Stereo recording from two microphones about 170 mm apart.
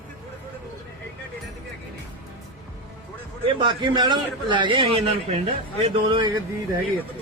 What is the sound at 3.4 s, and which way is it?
A man's voice, 30° right (ahead or behind).